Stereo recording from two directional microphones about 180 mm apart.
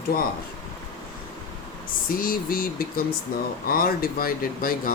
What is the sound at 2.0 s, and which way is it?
Speech, 50° left (ahead or behind).